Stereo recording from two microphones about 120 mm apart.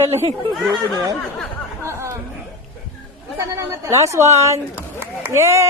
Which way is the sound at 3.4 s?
25° right (ahead or behind).